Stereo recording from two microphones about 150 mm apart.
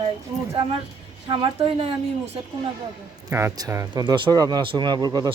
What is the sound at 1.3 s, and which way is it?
Speech, 35° right (ahead or behind).